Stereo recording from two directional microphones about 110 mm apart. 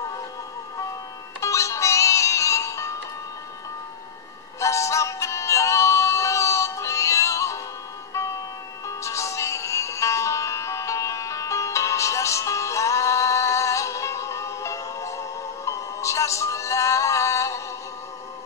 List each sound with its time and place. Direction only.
1.4 s music: 25° left (ahead or behind)
4.6 s synthetic singing: 25° left (ahead or behind)
8.8 s music: 25° left (ahead or behind)